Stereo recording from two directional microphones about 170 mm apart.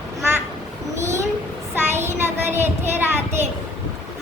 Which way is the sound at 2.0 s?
15° right (ahead or behind).